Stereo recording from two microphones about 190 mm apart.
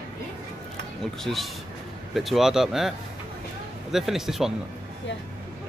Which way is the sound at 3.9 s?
Centre (ahead or behind).